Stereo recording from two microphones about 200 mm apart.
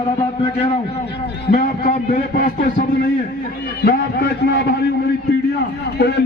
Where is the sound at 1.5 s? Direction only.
45° left (ahead or behind).